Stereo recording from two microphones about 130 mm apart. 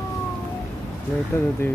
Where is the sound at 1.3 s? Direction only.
20° left (ahead or behind).